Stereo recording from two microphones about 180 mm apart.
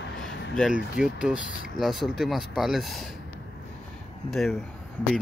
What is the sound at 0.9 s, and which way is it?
Speech, 5° right (ahead or behind).